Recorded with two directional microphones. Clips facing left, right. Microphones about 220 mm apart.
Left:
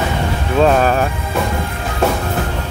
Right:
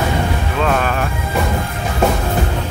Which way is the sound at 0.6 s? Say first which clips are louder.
Left 6 dB; 35° left (ahead or behind).